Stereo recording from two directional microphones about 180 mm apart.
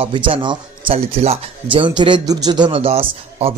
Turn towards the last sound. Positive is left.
turn(degrees=-30)  # may be behind; listen again after turning